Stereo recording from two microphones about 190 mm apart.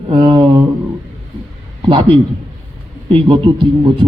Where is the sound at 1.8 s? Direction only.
25° right (ahead or behind).